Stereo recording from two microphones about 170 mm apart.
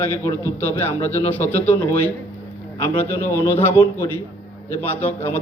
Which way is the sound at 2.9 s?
10° left (ahead or behind).